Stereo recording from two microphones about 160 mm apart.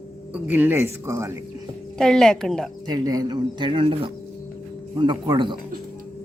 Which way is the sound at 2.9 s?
25° right (ahead or behind).